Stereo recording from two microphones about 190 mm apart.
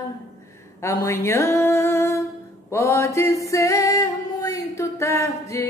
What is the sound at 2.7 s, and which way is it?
Music, 15° left (ahead or behind).